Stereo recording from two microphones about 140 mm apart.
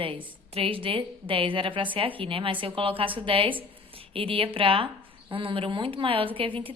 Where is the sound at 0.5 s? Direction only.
40° right (ahead or behind).